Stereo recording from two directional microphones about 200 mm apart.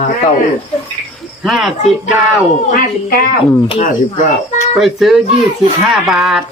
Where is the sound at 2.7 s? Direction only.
45° left (ahead or behind).